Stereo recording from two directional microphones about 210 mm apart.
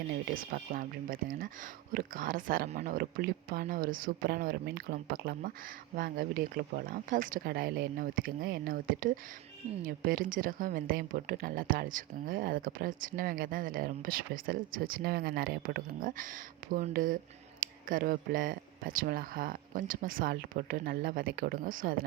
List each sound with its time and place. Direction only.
0.5 s a woman's voice: 45° right (ahead or behind)